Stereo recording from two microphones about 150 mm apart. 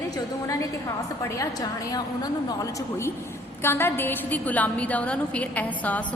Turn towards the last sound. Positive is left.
turn(degrees=10)  # may be behind; listen again after turning